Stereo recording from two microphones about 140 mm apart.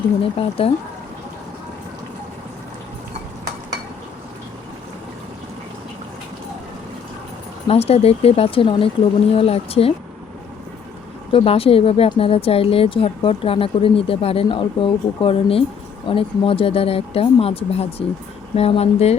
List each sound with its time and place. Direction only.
0.3 s speech: 45° left (ahead or behind)
7.7 s speech: 45° left (ahead or behind)
11.3 s speech: 40° left (ahead or behind)